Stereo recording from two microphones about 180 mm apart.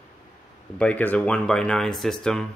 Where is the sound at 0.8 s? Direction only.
10° left (ahead or behind).